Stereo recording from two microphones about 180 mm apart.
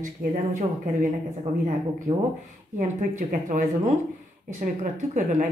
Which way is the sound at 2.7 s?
45° right (ahead or behind).